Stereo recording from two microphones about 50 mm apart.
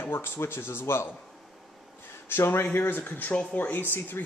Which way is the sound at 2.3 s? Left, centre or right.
Left.